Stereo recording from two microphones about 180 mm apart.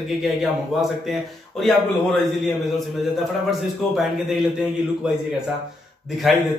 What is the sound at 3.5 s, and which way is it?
A man's voice, centre (ahead or behind).